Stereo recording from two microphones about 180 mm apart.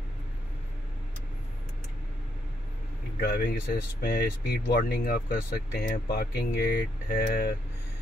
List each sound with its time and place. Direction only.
3.2 s speech: 60° left (ahead or behind)